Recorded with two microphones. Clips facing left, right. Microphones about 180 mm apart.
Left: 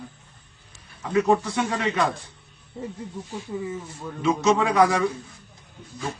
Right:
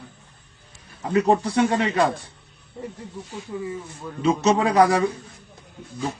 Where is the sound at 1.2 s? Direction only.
30° right (ahead or behind).